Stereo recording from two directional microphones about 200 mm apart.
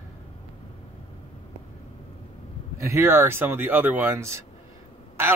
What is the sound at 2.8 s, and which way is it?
A man's voice, 15° right (ahead or behind).